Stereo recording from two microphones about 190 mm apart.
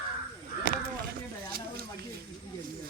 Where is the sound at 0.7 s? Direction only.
50° right (ahead or behind).